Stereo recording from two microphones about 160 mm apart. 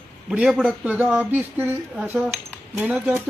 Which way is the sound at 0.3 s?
5° right (ahead or behind).